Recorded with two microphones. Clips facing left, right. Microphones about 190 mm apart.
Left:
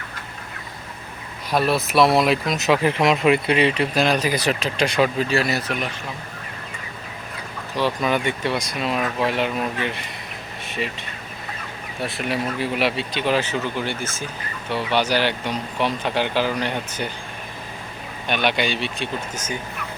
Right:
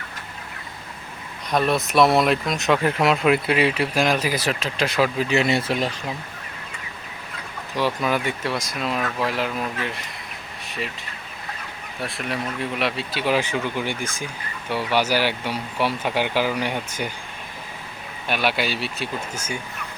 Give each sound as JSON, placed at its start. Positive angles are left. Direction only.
{"t": 1.5, "sound": "speech", "side_deg": 5}
{"t": 5.3, "sound": "speech", "side_deg": -25}
{"t": 8.0, "sound": "speech", "side_deg": -5}
{"t": 12.0, "sound": "speech", "side_deg": 0}
{"t": 18.3, "sound": "speech", "side_deg": -5}